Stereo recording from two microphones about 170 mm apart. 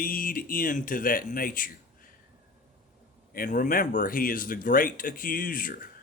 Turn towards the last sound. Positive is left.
turn(degrees=55)  # may be behind; listen again after turning